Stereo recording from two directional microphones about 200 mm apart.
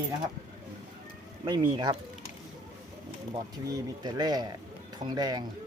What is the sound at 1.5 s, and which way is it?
Speech, 20° right (ahead or behind).